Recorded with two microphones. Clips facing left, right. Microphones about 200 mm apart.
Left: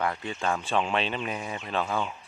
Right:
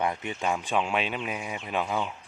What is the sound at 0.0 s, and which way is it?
Speech, 20° right (ahead or behind).